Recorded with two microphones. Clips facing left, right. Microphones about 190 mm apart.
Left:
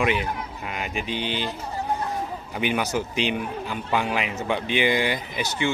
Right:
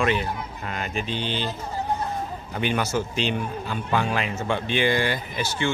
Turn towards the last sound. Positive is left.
turn(degrees=20)  # may be behind; listen again after turning